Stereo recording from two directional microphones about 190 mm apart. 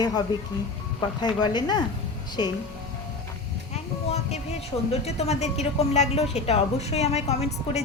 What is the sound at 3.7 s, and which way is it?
Speech, 35° left (ahead or behind).